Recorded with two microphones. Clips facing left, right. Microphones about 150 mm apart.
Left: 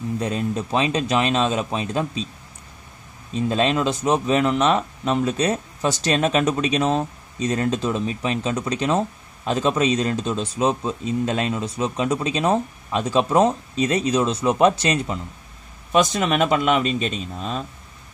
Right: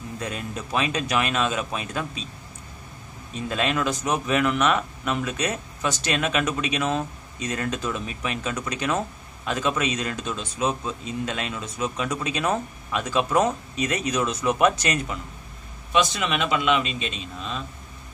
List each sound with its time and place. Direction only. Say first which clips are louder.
0.2 s speech: left 6 dB; 30° left (ahead or behind)
3.3 s speech: left 5 dB; 30° left (ahead or behind)
15.9 s speech: left 4 dB; 40° left (ahead or behind)